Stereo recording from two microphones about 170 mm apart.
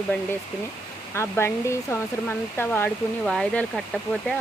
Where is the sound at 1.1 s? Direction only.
15° left (ahead or behind).